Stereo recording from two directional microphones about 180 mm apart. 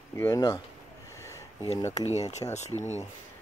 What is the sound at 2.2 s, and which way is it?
Speech, 40° left (ahead or behind).